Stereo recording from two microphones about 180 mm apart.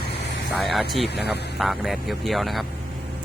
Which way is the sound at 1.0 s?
70° left (ahead or behind).